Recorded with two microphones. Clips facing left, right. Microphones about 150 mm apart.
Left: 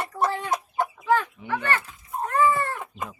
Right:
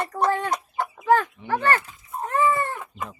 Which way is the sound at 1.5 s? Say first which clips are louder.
Right 4 dB; 40° right (ahead or behind).